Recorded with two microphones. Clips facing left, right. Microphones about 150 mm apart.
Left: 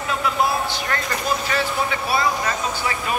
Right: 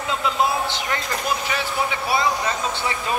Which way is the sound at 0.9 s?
15° right (ahead or behind).